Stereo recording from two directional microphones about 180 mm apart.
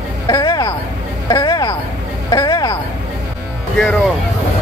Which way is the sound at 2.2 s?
20° left (ahead or behind).